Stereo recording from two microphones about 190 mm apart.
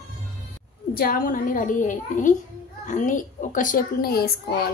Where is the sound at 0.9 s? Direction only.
50° left (ahead or behind).